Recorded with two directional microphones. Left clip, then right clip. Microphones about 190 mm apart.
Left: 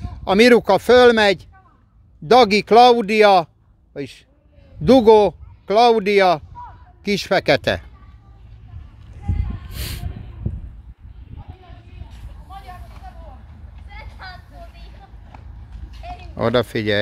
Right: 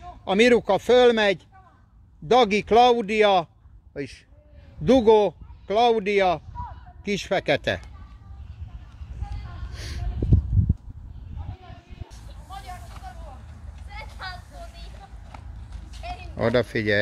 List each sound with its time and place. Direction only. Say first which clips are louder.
0.2 s a man's voice: left 6 dB; 35° left (ahead or behind)
3.9 s speech: left 3 dB; 10° left (ahead or behind)
4.8 s a man's voice: left 6 dB; 30° left (ahead or behind)
9.8 s a sound: left 7 dB; 15° left (ahead or behind)
13.8 s vehicle: right 1 dB; 5° right (ahead or behind)
15.3 s clip-clop: even; 10° right (ahead or behind)
16.0 s a sound: left 1 dB; 10° right (ahead or behind)
16.3 s speech: left 4 dB; 15° left (ahead or behind)